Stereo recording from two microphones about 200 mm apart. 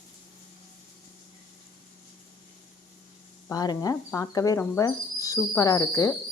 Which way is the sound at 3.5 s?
20° left (ahead or behind).